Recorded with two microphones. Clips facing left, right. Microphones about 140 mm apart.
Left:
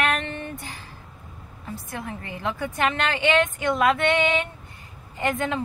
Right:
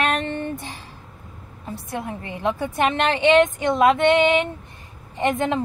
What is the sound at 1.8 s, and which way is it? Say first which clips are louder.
A woman's voice: right 5 dB; 25° right (ahead or behind).